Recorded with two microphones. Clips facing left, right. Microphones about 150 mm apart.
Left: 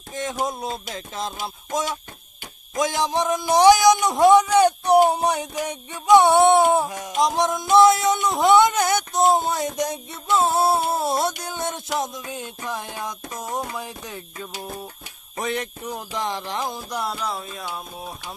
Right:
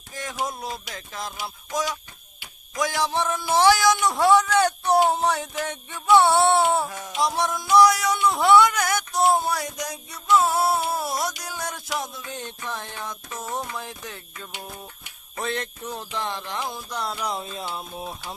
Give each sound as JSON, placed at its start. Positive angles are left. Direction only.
{"t": 0.1, "sound": "a sound", "side_deg": 20}
{"t": 2.7, "sound": "speech", "side_deg": 20}
{"t": 7.2, "sound": "a sound", "side_deg": 20}
{"t": 12.3, "sound": "speech", "side_deg": 10}
{"t": 15.4, "sound": "speech", "side_deg": 15}
{"t": 17.2, "sound": "music", "side_deg": -25}